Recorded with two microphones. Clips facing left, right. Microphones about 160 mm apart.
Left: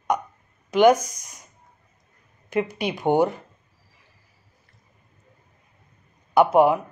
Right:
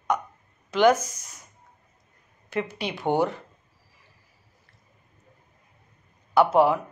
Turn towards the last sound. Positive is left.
turn(degrees=15)  # may be behind; listen again after turning